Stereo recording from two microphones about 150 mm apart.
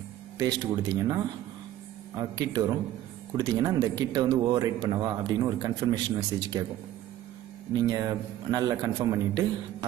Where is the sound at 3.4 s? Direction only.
25° right (ahead or behind).